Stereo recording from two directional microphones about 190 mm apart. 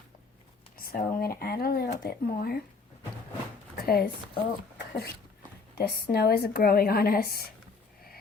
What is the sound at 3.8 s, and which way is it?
Speech, 55° left (ahead or behind).